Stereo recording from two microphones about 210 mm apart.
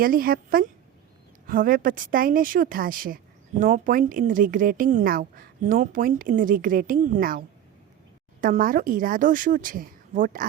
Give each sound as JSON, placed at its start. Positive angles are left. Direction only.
{"t": 0.0, "sound": "a woman's voice", "side_deg": -45}